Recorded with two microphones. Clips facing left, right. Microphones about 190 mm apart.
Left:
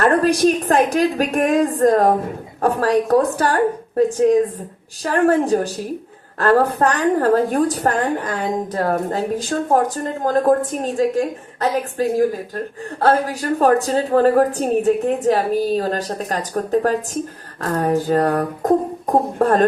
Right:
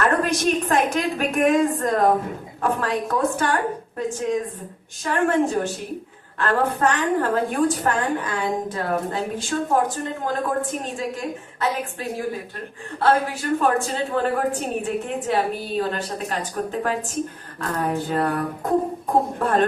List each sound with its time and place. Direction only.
0.0 s a woman's voice: 35° left (ahead or behind)